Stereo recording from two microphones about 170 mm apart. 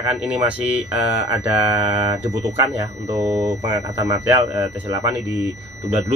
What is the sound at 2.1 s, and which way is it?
Speech, 15° right (ahead or behind).